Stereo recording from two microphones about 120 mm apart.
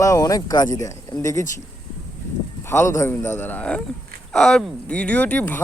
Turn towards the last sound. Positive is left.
turn(degrees=15)  # may be behind; listen again after turning